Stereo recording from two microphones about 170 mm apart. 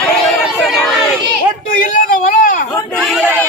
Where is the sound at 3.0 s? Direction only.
Centre (ahead or behind).